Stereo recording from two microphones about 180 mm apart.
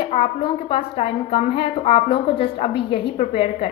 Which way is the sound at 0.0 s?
35° left (ahead or behind).